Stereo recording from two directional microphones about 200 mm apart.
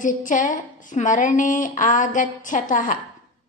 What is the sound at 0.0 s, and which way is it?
Speech, 40° left (ahead or behind).